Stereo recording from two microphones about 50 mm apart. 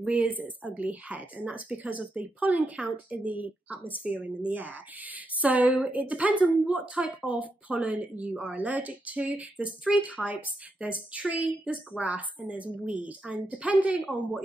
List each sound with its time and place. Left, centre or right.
0.0 s a woman's voice: right